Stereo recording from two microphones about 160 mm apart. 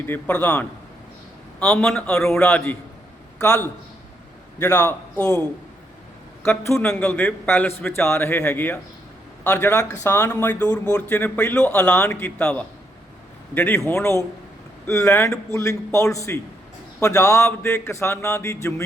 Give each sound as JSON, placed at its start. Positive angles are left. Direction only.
{"t": 0.0, "sound": "a man's voice", "side_deg": 10}
{"t": 3.4, "sound": "a man's voice", "side_deg": 20}
{"t": 6.5, "sound": "a man's voice", "side_deg": 15}